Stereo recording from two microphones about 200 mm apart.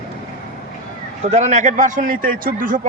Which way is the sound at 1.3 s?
35° right (ahead or behind).